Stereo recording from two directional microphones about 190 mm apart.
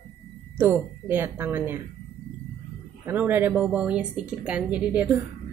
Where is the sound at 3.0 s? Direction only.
10° right (ahead or behind).